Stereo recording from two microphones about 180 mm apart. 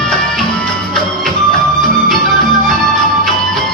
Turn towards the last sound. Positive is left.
turn(degrees=0)  # may be behind; listen again after turning